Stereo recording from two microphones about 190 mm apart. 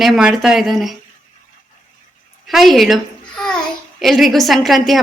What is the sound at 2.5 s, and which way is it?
Babbling, centre (ahead or behind).